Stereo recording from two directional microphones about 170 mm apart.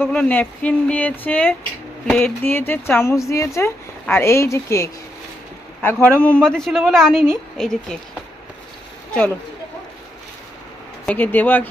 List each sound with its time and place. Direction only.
0.0 s a man's voice: 10° left (ahead or behind)
11.1 s speech: 10° left (ahead or behind)